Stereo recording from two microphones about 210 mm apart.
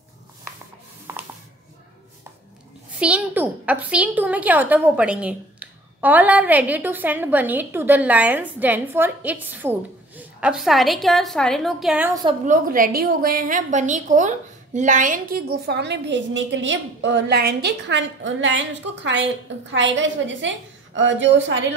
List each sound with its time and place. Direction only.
1.1 s a sound: 15° right (ahead or behind)
3.0 s a woman's voice: 5° right (ahead or behind)
12.1 s a woman's voice: 20° right (ahead or behind)
12.4 s a woman's voice: 40° right (ahead or behind); by 21.6 s 60° right (ahead or behind)